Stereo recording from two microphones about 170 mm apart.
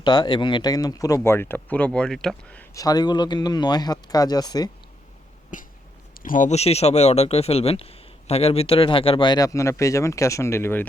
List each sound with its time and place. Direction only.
0.0 s speech: 25° left (ahead or behind); by 2.6 s 5° left (ahead or behind)
2.7 s speech: 20° left (ahead or behind)
5.5 s cough: 50° left (ahead or behind)
6.1 s speech: 50° left (ahead or behind); by 10.8 s 15° left (ahead or behind)